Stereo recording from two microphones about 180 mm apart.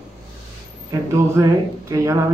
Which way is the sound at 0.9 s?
20° right (ahead or behind).